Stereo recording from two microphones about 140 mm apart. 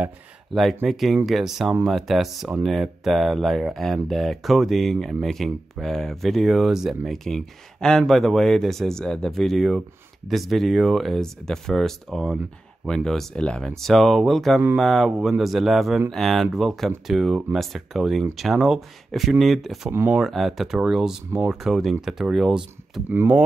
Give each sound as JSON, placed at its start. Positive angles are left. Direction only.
{"t": 0.8, "sound": "speech", "side_deg": 0}
{"t": 19.9, "sound": "speech", "side_deg": -15}
{"t": 20.2, "sound": "speech", "side_deg": 0}